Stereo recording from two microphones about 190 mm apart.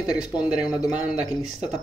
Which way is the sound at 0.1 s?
5° right (ahead or behind).